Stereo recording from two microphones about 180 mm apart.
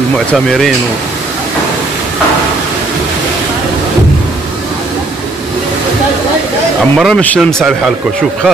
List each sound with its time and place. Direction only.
0.3 s a man's voice: centre (ahead or behind)
7.0 s a man's voice: 5° left (ahead or behind)